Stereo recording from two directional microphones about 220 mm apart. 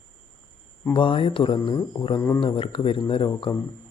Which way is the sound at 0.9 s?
25° left (ahead or behind).